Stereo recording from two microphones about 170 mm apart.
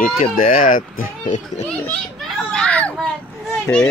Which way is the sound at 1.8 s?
5° left (ahead or behind).